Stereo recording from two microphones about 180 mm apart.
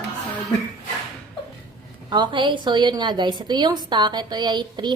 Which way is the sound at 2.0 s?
25° right (ahead or behind).